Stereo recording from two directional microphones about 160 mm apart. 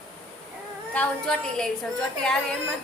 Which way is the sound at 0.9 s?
5° left (ahead or behind).